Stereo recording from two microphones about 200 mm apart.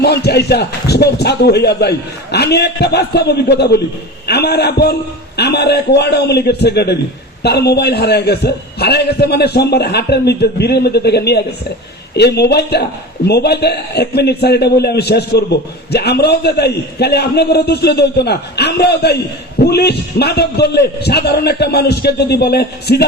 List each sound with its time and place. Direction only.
0.0 s a man's voice: 55° left (ahead or behind)